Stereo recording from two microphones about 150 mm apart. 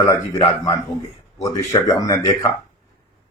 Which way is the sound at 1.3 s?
20° left (ahead or behind).